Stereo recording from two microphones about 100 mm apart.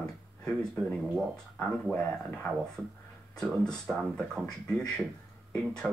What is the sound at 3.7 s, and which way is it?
A woman's voice, 5° left (ahead or behind).